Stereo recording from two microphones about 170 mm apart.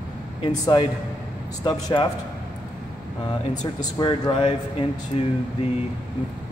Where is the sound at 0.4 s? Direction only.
25° left (ahead or behind).